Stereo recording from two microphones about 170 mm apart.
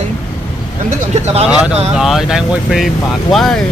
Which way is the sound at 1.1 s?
40° right (ahead or behind).